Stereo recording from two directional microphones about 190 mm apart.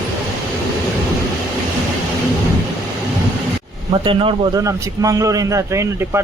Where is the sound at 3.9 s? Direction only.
30° right (ahead or behind).